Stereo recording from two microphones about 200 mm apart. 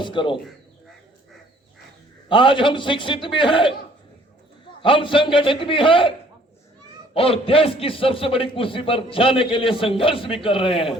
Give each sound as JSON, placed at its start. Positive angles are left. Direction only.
{"t": 0.0, "sound": "a man's voice", "side_deg": 25}
{"t": 2.3, "sound": "a man's voice", "side_deg": 25}
{"t": 4.8, "sound": "a man's voice", "side_deg": 25}